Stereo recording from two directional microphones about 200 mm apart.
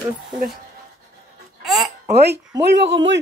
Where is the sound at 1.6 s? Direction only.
Centre (ahead or behind).